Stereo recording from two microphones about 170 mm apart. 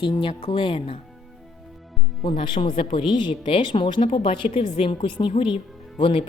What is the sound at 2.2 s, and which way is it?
Speech, 30° left (ahead or behind).